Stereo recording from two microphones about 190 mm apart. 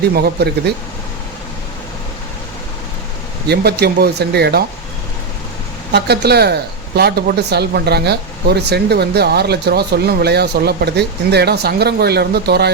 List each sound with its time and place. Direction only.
0.1 s speech: 60° right (ahead or behind)
3.5 s speech: 60° right (ahead or behind)
5.9 s speech: 60° right (ahead or behind)